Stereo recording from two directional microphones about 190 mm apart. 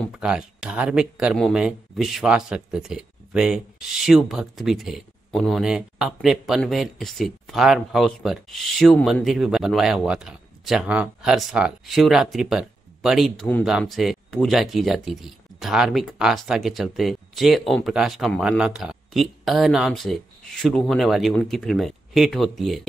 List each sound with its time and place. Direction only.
0.0 s speech: 5° right (ahead or behind)